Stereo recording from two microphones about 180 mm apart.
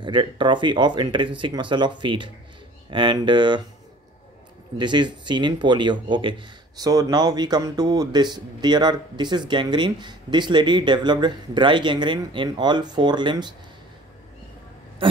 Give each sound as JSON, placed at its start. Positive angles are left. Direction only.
{"t": 0.0, "sound": "speech", "side_deg": -25}
{"t": 4.7, "sound": "speech", "side_deg": -25}